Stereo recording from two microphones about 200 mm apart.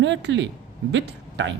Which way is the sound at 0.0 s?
65° right (ahead or behind).